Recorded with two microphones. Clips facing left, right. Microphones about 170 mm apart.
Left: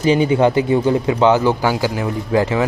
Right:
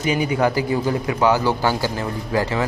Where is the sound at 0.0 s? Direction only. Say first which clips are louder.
Left 6 dB; 30° left (ahead or behind).